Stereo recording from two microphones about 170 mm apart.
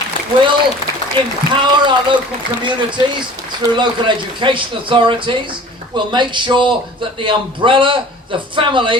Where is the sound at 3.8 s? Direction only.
30° right (ahead or behind).